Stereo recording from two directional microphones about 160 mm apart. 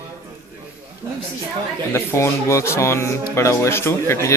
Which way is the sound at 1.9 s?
15° left (ahead or behind).